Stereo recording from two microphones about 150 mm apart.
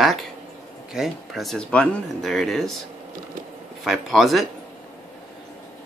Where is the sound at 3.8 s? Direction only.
Centre (ahead or behind).